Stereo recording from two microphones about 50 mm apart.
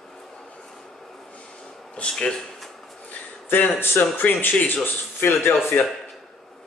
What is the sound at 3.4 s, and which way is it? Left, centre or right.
A man's voice, left.